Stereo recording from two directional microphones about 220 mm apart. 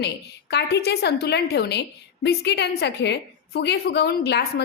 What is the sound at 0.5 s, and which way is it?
A woman's voice, 50° left (ahead or behind).